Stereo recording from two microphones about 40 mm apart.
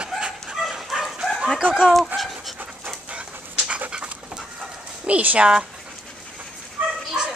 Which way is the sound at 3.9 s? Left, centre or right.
Right.